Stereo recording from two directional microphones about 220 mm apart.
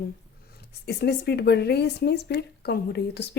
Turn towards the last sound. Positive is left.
turn(degrees=50)  # may be behind; listen again after turning